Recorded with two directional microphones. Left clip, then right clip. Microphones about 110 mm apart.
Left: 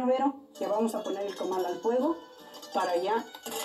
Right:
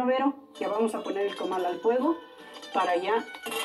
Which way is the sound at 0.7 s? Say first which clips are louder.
Right 1 dB; 10° left (ahead or behind).